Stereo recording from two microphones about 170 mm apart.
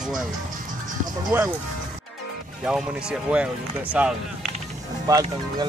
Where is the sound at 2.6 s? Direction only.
5° right (ahead or behind).